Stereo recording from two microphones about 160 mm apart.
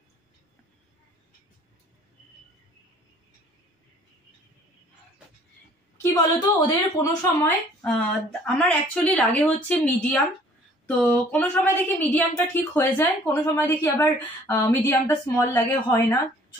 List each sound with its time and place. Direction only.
6.6 s speech: 25° left (ahead or behind)
7.4 s a woman's voice: 5° left (ahead or behind)